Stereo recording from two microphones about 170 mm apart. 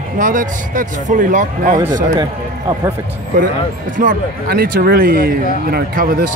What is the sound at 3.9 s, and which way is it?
Speech, 50° right (ahead or behind).